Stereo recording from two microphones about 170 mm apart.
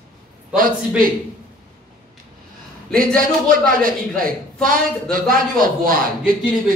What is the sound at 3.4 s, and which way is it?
Speech, 55° right (ahead or behind).